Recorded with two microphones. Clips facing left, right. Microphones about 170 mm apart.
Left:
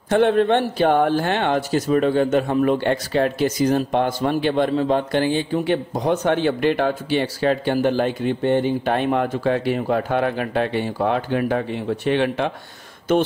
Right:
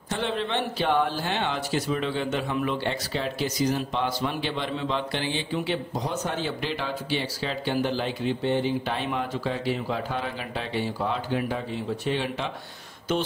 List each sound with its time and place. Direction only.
0.1 s speech: 50° left (ahead or behind)